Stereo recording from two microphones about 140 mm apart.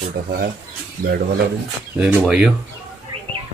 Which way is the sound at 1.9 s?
10° right (ahead or behind).